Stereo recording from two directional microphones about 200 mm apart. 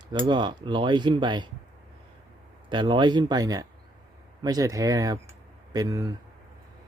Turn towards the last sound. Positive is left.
turn(degrees=-15)  # may be behind; listen again after turning